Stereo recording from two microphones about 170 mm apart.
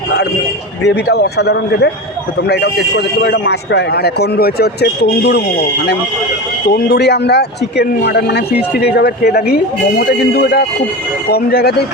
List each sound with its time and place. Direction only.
0.8 s a man's voice: 80° left
6.7 s a man's voice: 80° left